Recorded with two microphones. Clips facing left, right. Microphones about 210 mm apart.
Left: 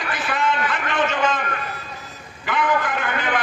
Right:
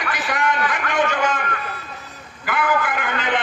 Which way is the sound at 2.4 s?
5° right (ahead or behind).